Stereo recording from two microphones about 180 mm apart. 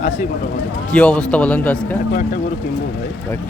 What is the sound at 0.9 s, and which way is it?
Speech, 5° left (ahead or behind).